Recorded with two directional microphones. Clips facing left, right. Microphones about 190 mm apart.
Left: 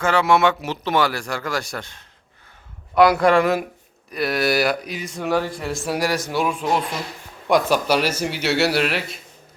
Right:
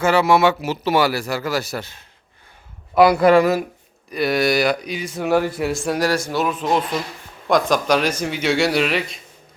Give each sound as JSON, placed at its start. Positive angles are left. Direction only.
{"t": 0.0, "sound": "speech", "side_deg": -5}